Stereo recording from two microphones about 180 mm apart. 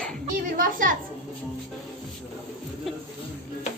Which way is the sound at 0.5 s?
50° right (ahead or behind).